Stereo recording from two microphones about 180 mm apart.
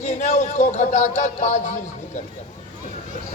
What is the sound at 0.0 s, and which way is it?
A man's voice, 40° left (ahead or behind).